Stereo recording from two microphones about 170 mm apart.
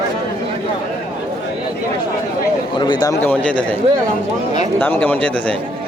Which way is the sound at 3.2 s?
10° left (ahead or behind).